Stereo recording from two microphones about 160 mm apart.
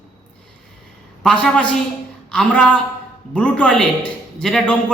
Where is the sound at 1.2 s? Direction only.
5° left (ahead or behind).